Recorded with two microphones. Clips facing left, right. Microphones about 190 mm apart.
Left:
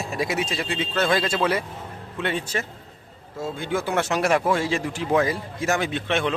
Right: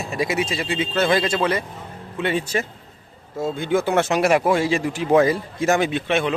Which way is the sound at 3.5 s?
20° right (ahead or behind).